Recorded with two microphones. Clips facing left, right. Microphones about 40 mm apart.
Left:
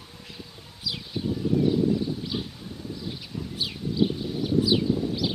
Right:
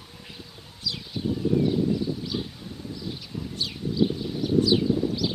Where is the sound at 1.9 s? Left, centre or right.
Centre.